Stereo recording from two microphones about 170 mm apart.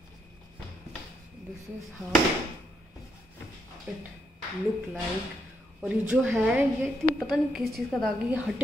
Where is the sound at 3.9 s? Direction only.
5° right (ahead or behind).